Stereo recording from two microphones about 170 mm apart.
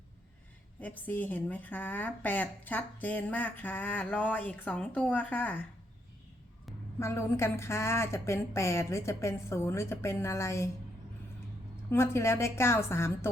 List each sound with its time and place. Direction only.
0.8 s a woman's voice: 10° left (ahead or behind)
7.0 s a woman's voice: 15° left (ahead or behind)
11.9 s a woman's voice: 15° left (ahead or behind)